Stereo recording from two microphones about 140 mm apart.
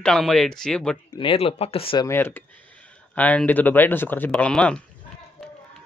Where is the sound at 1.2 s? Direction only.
40° left (ahead or behind).